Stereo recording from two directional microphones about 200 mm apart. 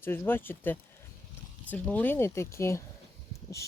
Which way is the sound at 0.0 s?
10° left (ahead or behind).